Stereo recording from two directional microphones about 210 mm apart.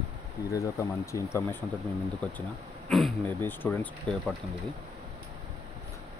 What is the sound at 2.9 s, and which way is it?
Speech, 5° left (ahead or behind).